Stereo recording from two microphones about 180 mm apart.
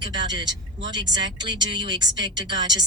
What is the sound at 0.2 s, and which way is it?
A woman's voice, 25° right (ahead or behind).